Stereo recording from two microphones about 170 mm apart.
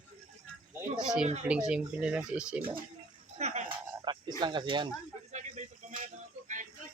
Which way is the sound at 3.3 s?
40° right (ahead or behind).